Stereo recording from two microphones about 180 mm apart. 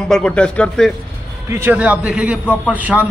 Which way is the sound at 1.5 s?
10° right (ahead or behind).